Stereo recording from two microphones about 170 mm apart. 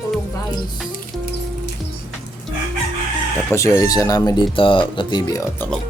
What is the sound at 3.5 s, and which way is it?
Speech, 15° left (ahead or behind).